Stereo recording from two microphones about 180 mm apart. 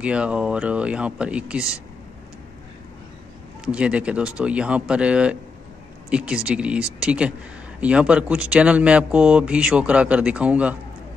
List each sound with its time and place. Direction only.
0.0 s speech: 5° right (ahead or behind)
3.6 s speech: 5° right (ahead or behind)